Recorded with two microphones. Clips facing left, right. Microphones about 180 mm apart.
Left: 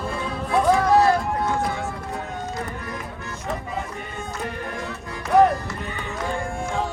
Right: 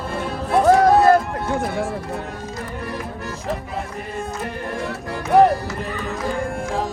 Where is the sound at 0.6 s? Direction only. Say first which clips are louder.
Right 5 dB; 55° right (ahead or behind).